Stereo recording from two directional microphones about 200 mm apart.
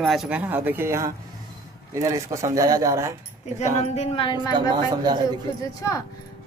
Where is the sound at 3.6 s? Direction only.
30° left (ahead or behind).